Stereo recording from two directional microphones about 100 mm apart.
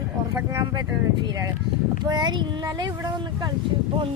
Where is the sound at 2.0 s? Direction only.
45° right (ahead or behind).